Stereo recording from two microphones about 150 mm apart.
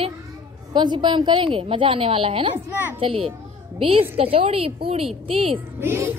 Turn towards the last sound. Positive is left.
turn(degrees=-15)  # may be behind; listen again after turning